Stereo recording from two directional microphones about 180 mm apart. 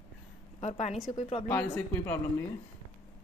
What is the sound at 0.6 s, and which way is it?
Speech, 40° left (ahead or behind).